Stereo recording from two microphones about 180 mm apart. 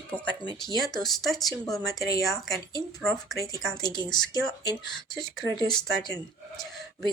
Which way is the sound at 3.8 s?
20° left (ahead or behind).